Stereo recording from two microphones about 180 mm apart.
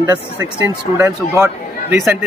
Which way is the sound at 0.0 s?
20° right (ahead or behind).